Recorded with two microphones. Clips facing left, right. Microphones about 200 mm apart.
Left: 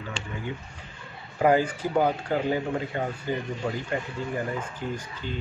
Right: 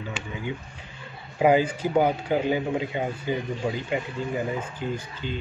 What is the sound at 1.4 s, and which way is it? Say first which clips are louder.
Speech: right 2 dB; 15° right (ahead or behind).